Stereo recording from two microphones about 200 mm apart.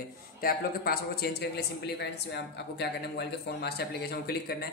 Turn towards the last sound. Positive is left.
turn(degrees=50)  # may be behind; listen again after turning